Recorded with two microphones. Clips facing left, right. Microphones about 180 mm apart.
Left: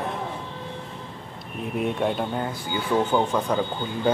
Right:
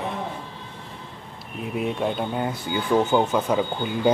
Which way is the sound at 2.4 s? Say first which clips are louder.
Right 2 dB; 10° right (ahead or behind).